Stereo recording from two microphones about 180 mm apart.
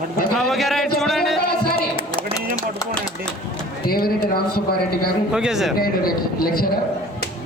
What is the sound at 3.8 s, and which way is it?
Speech, 55° left (ahead or behind).